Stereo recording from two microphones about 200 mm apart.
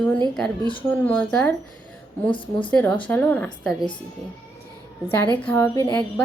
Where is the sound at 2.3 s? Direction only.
25° left (ahead or behind).